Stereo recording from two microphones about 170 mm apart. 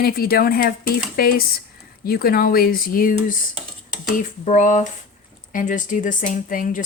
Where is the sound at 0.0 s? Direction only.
60° left (ahead or behind).